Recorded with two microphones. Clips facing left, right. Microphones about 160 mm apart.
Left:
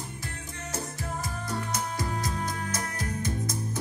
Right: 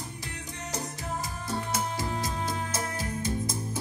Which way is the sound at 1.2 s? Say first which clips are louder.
Even; 25° right (ahead or behind).